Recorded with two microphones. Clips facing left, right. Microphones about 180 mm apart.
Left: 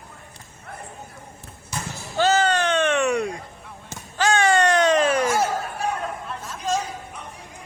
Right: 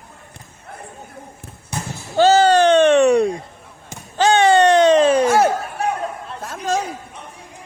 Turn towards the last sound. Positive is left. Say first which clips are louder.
# right 4 dB
turn(degrees=-60)  # may be behind; listen again after turning